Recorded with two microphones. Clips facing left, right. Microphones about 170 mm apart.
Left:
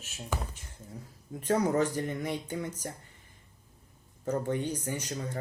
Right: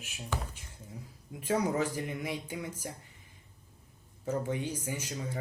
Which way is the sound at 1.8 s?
5° right (ahead or behind).